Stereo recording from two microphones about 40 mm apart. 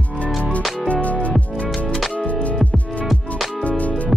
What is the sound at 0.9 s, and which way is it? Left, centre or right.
Music, left.